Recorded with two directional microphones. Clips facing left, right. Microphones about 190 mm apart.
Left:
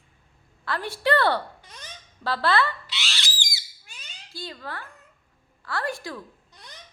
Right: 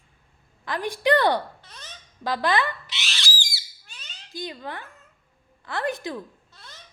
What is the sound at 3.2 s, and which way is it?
Squawk, 20° left (ahead or behind).